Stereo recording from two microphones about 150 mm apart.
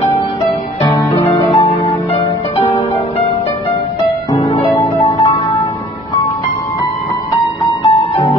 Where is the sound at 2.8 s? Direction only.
20° left (ahead or behind).